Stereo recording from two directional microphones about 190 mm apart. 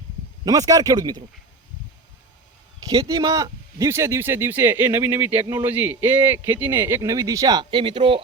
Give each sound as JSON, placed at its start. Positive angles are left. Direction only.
{"t": 0.4, "sound": "speech", "side_deg": -20}
{"t": 2.9, "sound": "speech", "side_deg": -20}
{"t": 5.3, "sound": "speech", "side_deg": -30}
{"t": 5.6, "sound": "speech", "side_deg": -10}